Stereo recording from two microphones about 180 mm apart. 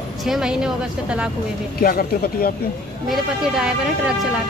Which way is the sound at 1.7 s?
55° left (ahead or behind).